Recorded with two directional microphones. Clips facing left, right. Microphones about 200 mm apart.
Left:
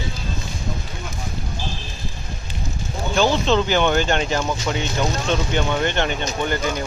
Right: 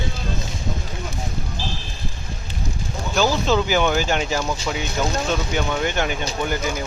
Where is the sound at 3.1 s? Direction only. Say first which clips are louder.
Left 1 dB; 5° right (ahead or behind).